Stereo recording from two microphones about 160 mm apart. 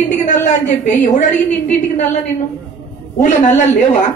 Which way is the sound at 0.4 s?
50° left (ahead or behind).